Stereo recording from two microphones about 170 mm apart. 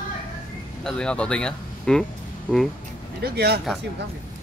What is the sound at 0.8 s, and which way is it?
Speech, 5° left (ahead or behind).